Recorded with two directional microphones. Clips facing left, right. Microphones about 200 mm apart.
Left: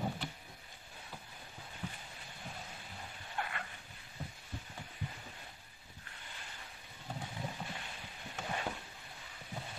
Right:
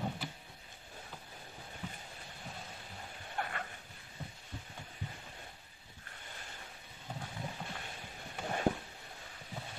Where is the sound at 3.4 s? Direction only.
45° right (ahead or behind).